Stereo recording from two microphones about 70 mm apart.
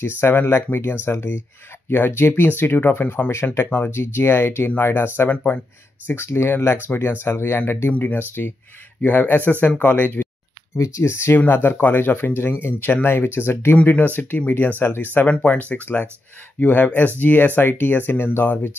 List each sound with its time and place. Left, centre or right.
0.0 s speech: left
10.8 s speech: left
11.3 s speech: left
13.8 s speech: left
15.2 s speech: centre